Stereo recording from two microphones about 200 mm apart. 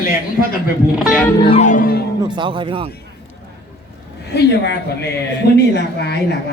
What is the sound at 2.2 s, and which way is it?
Speech, 25° right (ahead or behind).